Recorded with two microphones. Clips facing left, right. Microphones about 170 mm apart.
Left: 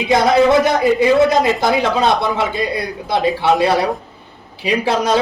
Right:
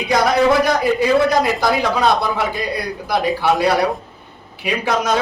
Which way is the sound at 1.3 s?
20° left (ahead or behind).